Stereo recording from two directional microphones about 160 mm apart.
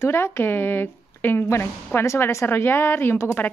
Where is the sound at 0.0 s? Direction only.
15° left (ahead or behind).